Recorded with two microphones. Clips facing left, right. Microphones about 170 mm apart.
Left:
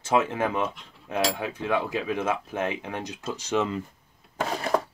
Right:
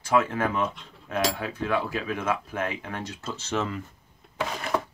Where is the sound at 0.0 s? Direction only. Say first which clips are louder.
Even; 20° left (ahead or behind).